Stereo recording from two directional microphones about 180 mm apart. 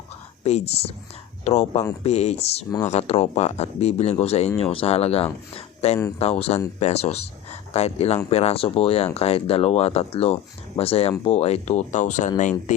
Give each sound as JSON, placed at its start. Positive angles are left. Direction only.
{"t": 0.4, "sound": "speech", "side_deg": 35}